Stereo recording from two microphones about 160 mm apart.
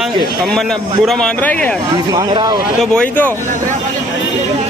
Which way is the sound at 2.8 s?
5° left (ahead or behind).